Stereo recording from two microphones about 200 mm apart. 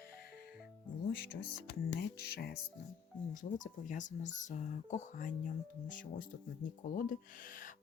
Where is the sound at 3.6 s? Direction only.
40° left (ahead or behind).